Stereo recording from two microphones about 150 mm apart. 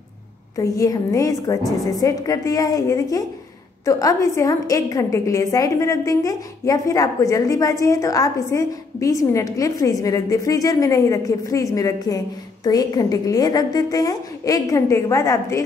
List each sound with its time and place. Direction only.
0.6 s a woman's voice: 25° left (ahead or behind)